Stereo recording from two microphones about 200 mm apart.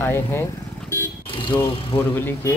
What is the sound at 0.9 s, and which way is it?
Vehicle, 15° left (ahead or behind).